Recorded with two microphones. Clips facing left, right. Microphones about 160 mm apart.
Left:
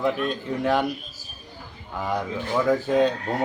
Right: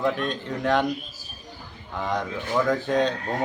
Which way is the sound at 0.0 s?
5° left (ahead or behind).